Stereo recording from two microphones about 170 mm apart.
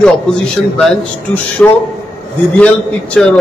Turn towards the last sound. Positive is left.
turn(degrees=5)  # may be behind; listen again after turning